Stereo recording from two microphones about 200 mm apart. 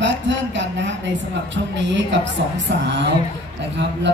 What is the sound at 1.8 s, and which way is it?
Speech, 65° right (ahead or behind).